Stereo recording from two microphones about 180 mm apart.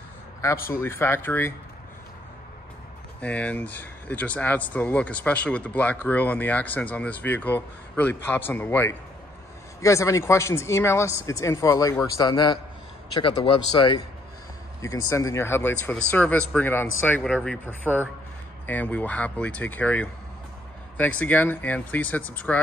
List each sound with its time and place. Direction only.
0.4 s speech: 15° left (ahead or behind)
3.2 s speech: 5° left (ahead or behind)